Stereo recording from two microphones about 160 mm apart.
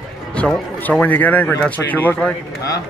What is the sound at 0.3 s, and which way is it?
A man's voice, 5° left (ahead or behind).